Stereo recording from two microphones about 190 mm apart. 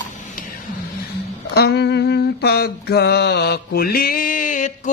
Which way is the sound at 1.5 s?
60° left (ahead or behind).